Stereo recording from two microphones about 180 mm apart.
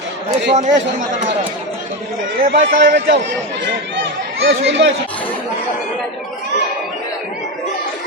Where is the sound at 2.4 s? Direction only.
60° right (ahead or behind).